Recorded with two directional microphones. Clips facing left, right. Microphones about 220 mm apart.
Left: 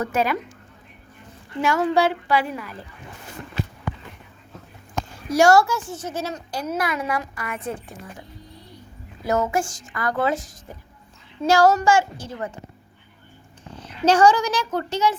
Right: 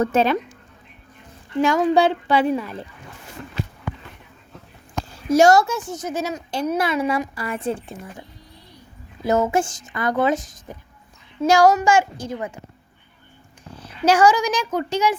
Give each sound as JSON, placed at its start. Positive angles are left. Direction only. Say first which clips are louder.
{"t": 0.0, "sound": "speech", "louder": "right 4 dB", "side_deg": -25}
{"t": 1.6, "sound": "speech", "louder": "right 3 dB", "side_deg": -15}
{"t": 5.3, "sound": "speech", "louder": "right 2 dB", "side_deg": -20}
{"t": 6.5, "sound": "speech", "louder": "right 5 dB", "side_deg": -25}
{"t": 9.2, "sound": "a woman's voice", "louder": "right 3 dB", "side_deg": -25}
{"t": 13.7, "sound": "a woman's voice", "louder": "even", "side_deg": -10}